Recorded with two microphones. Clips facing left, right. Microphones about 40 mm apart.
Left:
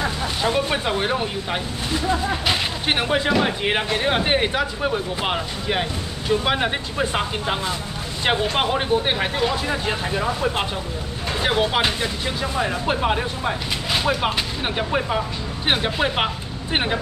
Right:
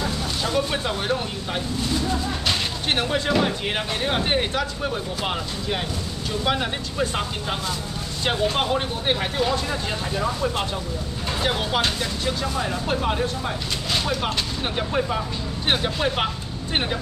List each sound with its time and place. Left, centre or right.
0.0 s speech: left
2.4 s speech: centre
11.4 s speech: centre